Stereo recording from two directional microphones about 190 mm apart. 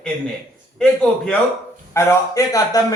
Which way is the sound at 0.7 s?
5° left (ahead or behind).